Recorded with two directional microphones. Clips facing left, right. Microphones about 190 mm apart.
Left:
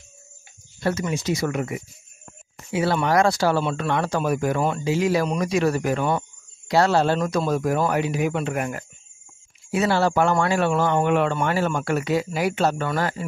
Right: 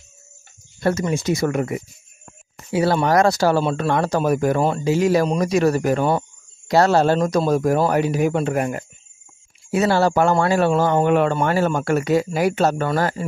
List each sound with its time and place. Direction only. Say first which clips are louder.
0.7 s speech: right 4 dB; 45° right (ahead or behind)
9.7 s speech: right 3 dB; 40° right (ahead or behind)